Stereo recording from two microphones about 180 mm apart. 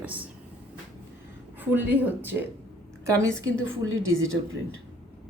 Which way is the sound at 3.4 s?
90° right.